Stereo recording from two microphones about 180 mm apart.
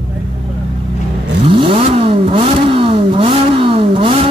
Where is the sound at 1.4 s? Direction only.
30° right (ahead or behind).